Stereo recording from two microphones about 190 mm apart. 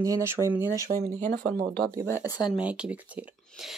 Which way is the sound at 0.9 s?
40° right (ahead or behind).